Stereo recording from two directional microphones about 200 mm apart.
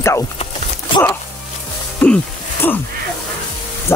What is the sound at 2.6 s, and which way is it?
Speech, 10° left (ahead or behind).